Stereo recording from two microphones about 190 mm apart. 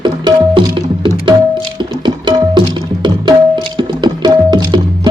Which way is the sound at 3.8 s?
20° right (ahead or behind).